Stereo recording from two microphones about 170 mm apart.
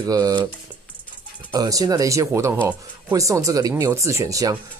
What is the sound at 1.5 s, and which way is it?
Speech, 20° right (ahead or behind).